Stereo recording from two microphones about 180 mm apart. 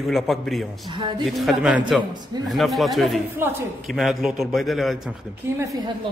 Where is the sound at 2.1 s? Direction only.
25° right (ahead or behind).